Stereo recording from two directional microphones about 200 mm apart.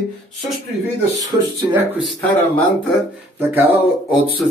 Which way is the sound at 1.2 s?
5° right (ahead or behind).